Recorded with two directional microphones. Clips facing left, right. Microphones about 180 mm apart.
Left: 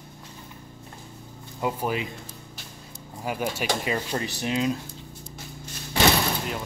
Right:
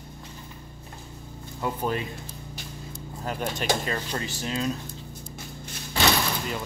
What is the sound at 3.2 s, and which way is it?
Speech, 10° left (ahead or behind).